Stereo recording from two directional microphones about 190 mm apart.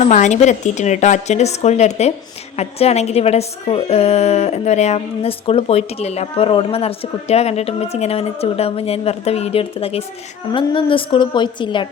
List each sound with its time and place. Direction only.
0.0 s a woman's voice: 40° left (ahead or behind)